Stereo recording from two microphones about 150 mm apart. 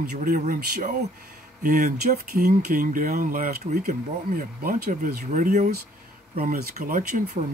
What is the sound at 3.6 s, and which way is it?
Speech, 55° right (ahead or behind).